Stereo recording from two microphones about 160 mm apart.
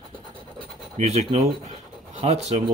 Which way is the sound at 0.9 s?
40° right (ahead or behind).